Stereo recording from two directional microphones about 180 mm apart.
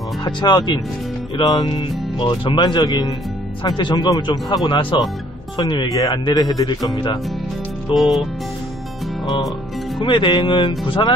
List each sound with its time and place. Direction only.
0.2 s speech: 25° left (ahead or behind)
7.9 s music: centre (ahead or behind)
9.2 s music: 20° left (ahead or behind)
9.9 s speech: 25° left (ahead or behind)